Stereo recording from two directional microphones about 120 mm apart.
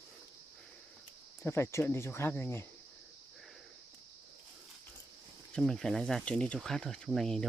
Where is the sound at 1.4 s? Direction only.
20° left (ahead or behind).